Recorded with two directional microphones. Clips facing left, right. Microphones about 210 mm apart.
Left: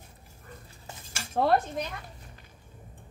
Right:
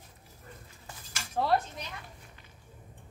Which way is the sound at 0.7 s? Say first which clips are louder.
Left 3 dB; 25° left (ahead or behind).